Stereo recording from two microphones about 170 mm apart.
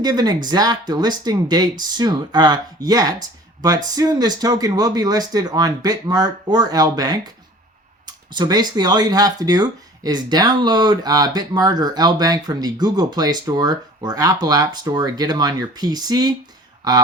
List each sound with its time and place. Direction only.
0.0 s speech: 25° right (ahead or behind)